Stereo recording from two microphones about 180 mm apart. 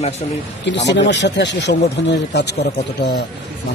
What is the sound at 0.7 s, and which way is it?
Speech, 80° left.